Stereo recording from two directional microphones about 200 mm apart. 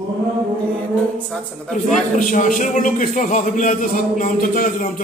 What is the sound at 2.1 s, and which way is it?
A man's voice, 40° left (ahead or behind).